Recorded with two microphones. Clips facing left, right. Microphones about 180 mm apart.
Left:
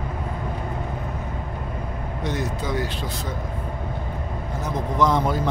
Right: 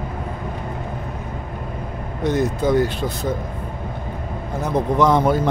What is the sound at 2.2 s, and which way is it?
Speech, 50° right (ahead or behind).